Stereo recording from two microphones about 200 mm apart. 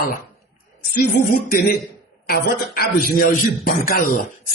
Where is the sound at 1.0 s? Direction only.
50° left (ahead or behind).